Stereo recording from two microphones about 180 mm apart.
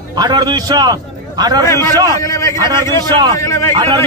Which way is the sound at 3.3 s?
15° left (ahead or behind).